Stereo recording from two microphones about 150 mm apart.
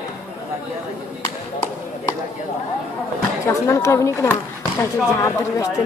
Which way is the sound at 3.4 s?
20° left (ahead or behind).